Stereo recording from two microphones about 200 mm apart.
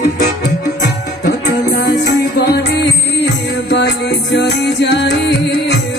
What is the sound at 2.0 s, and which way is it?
Music, 50° left (ahead or behind).